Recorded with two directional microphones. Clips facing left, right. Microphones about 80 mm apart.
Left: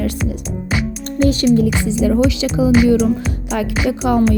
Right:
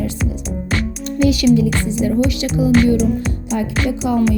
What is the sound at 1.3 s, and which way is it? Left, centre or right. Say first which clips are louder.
Speech: even; left.